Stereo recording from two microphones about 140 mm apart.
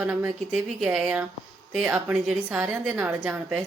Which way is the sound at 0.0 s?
10° right (ahead or behind).